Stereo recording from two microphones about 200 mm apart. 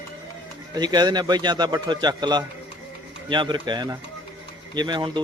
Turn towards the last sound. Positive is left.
turn(degrees=-20)  # may be behind; listen again after turning